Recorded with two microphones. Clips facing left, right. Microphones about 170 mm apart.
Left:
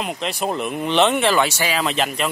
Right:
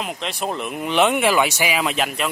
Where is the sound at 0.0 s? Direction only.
Centre (ahead or behind).